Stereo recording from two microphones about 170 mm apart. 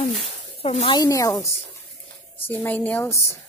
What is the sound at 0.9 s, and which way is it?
Speech, 20° left (ahead or behind).